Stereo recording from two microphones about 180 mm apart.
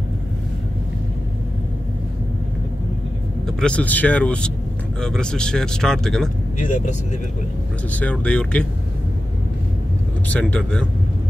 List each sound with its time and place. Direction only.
3.4 s speech: 5° left (ahead or behind)
6.6 s speech: 40° left (ahead or behind)
7.9 s speech: 5° left (ahead or behind)
10.2 s speech: 10° left (ahead or behind)